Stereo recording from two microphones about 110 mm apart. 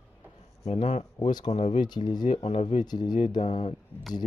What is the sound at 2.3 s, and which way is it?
Speech, 70° left (ahead or behind).